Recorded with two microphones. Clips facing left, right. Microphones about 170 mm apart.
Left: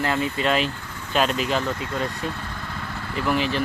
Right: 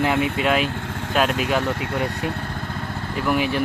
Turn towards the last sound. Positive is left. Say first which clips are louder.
# right 2 dB
turn(degrees=-10)  # may be behind; listen again after turning